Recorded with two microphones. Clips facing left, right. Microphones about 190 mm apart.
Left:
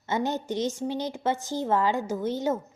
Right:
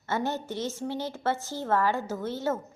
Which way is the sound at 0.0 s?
15° left (ahead or behind).